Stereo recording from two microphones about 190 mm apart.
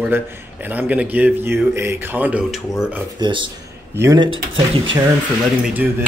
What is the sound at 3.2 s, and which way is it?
A man's voice, 25° right (ahead or behind).